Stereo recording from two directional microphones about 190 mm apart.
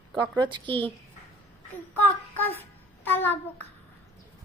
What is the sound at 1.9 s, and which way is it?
Child singing, 10° left (ahead or behind).